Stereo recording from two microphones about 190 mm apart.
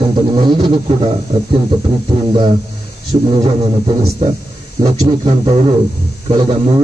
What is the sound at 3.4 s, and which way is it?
A man's voice, 30° right (ahead or behind).